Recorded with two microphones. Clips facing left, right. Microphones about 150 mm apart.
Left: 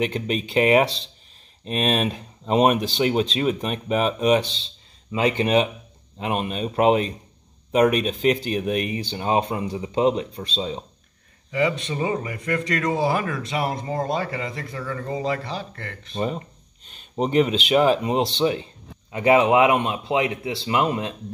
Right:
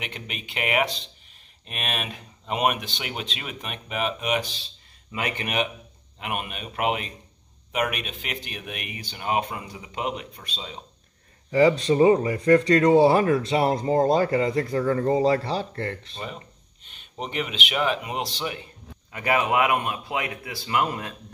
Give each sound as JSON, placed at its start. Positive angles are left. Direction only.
{"t": 0.0, "sound": "speech", "side_deg": 35}
{"t": 11.5, "sound": "speech", "side_deg": -35}
{"t": 16.2, "sound": "speech", "side_deg": 35}